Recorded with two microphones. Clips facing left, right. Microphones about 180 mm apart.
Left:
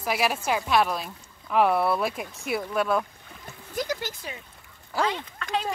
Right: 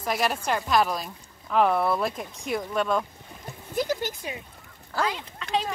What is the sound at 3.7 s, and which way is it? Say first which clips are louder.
Speech: right 3 dB; 10° right (ahead or behind).